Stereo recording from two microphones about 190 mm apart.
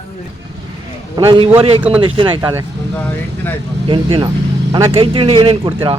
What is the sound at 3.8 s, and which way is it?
A man's voice, 25° right (ahead or behind).